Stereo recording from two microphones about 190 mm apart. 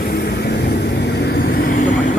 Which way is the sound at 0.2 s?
55° left (ahead or behind).